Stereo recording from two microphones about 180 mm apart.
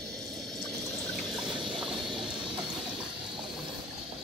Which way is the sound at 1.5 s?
25° right (ahead or behind).